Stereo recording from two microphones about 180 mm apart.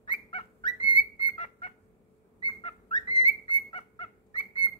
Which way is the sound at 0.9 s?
25° left (ahead or behind).